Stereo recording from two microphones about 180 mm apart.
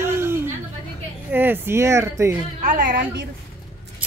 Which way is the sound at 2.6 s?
45° right (ahead or behind).